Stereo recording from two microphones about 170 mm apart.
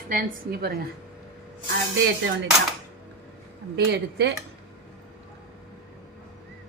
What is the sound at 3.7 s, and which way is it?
Speech, 80° right.